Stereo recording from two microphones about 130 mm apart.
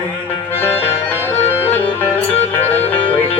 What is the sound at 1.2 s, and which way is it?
Music, 15° left (ahead or behind).